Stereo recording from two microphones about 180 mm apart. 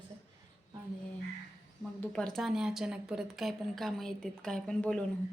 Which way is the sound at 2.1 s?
5° left (ahead or behind).